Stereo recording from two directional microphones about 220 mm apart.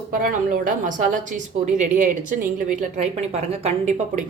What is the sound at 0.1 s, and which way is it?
A woman's voice, 40° right (ahead or behind).